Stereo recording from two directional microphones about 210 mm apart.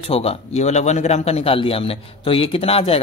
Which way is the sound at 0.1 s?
30° left (ahead or behind).